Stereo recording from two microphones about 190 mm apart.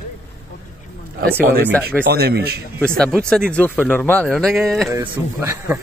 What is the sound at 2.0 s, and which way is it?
Speech, 60° right (ahead or behind).